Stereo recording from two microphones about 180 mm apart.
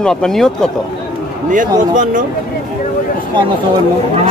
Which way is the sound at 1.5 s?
45° right (ahead or behind).